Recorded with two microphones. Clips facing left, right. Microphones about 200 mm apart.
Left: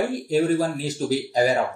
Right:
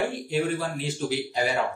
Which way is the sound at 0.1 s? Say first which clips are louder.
Left 6 dB; 40° left (ahead or behind).